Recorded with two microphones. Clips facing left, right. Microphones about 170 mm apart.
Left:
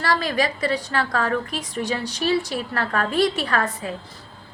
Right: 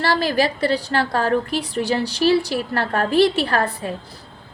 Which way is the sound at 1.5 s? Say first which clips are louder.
Right 7 dB; 65° right (ahead or behind).